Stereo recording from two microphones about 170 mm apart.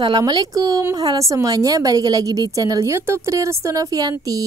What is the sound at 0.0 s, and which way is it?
A woman's voice, 25° right (ahead or behind).